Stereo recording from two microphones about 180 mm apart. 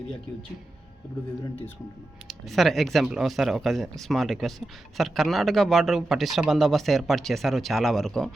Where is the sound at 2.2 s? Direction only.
Centre (ahead or behind).